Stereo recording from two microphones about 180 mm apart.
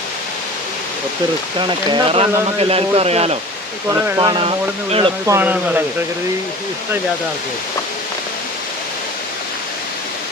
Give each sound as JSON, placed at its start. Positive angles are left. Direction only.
{"t": 1.5, "sound": "speech", "side_deg": -30}
{"t": 3.8, "sound": "speech", "side_deg": -20}
{"t": 5.2, "sound": "speech", "side_deg": -15}